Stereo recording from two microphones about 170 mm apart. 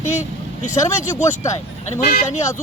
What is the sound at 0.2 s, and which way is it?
Speech, 50° left (ahead or behind).